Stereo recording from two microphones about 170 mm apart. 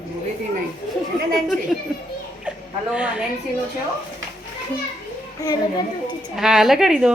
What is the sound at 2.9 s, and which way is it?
Speech, 5° right (ahead or behind).